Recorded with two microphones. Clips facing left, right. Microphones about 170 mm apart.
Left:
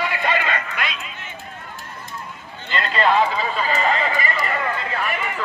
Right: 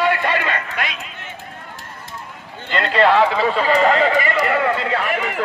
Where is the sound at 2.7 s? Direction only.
60° right (ahead or behind).